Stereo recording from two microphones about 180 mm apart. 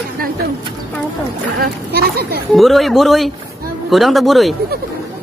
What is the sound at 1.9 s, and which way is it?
Children playing, 60° right (ahead or behind).